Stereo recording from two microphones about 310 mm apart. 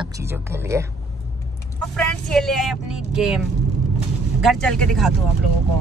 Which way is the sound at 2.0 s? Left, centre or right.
Centre.